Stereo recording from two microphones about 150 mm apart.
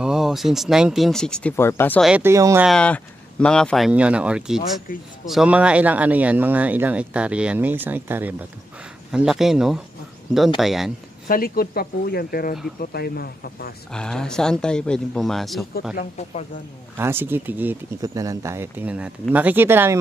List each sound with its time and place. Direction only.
0.0 s speech: 5° right (ahead or behind)
1.6 s speech: 15° left (ahead or behind)
2.0 s speech: 5° right (ahead or behind)
2.2 s speech: 20° right (ahead or behind)
2.6 s speech: 5° left (ahead or behind)
11.2 s speech: 75° left (ahead or behind)
12.8 s speech: 90° left
13.9 s speech: 5° left (ahead or behind)
16.9 s speech: 15° right (ahead or behind)
18.0 s speech: 25° right (ahead or behind)